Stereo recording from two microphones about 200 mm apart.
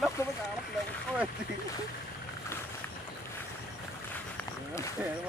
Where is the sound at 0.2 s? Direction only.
15° left (ahead or behind).